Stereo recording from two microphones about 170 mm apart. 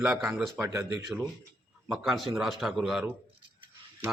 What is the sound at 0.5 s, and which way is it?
Speech, 15° right (ahead or behind).